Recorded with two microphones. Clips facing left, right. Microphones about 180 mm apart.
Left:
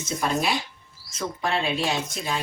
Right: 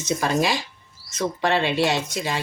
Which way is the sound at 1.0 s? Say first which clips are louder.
Right 5 dB; 80° right.